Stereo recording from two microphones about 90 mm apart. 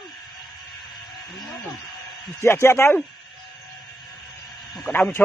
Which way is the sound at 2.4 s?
30° left (ahead or behind).